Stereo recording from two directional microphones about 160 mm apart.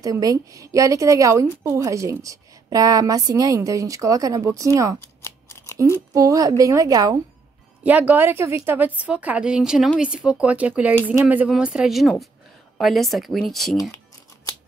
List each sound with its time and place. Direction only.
0.0 s a woman's voice: 20° right (ahead or behind)
5.0 s scissors: 15° left (ahead or behind)
5.9 s a woman's voice: 20° right (ahead or behind)
7.8 s speech: 10° right (ahead or behind)
13.7 s a sound: 20° left (ahead or behind)